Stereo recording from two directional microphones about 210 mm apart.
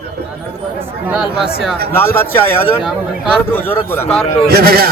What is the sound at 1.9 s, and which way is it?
A man's voice, 10° left (ahead or behind).